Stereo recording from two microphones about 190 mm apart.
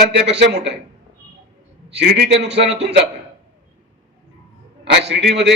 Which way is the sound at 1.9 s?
55° right (ahead or behind).